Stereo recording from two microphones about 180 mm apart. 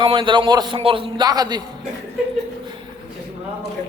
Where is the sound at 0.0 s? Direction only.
25° right (ahead or behind).